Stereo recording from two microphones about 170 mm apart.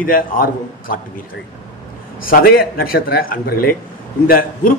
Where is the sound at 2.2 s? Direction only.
60° left (ahead or behind).